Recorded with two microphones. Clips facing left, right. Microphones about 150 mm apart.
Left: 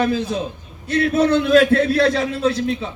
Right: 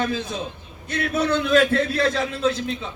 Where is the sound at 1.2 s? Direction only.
50° left (ahead or behind).